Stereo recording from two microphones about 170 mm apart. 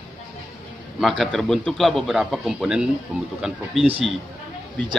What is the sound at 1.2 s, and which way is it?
A man's voice, centre (ahead or behind).